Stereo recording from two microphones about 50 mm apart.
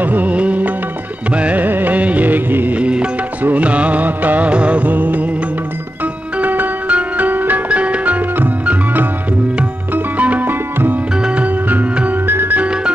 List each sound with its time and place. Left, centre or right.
0.0 s music: right
1.7 s music: right
2.8 s music: right
6.4 s music: right
7.7 s music: right
10.1 s music: right
12.3 s music: right